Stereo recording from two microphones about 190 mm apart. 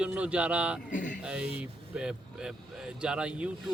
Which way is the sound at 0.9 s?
45° left (ahead or behind).